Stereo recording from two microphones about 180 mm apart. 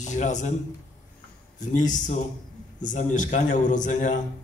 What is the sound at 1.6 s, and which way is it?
A man's voice, 45° left (ahead or behind).